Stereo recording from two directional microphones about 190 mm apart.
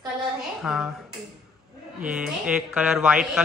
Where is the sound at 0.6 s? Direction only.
Centre (ahead or behind).